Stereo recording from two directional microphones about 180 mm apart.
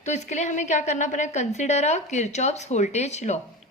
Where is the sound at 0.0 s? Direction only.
40° left (ahead or behind).